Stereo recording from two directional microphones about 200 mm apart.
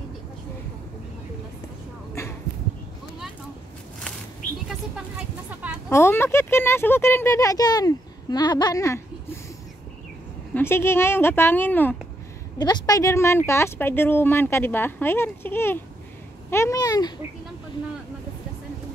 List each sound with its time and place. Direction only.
5.5 s music: 5° right (ahead or behind)
5.9 s speech: 10° left (ahead or behind)
10.5 s speech: 10° left (ahead or behind)
12.5 s speech: 20° left (ahead or behind)